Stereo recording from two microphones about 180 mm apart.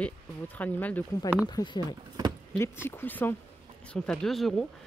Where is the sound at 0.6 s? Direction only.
10° left (ahead or behind).